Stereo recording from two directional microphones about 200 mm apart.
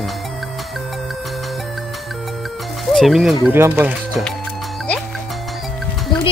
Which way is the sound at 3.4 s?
10° right (ahead or behind).